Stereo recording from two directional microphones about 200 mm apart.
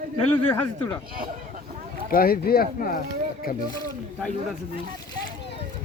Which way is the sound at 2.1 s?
50° left (ahead or behind).